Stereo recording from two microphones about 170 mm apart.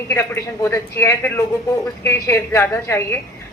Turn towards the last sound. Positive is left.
turn(degrees=15)  # may be behind; listen again after turning